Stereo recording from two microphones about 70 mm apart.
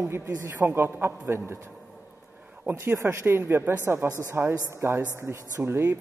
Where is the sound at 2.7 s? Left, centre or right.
Right.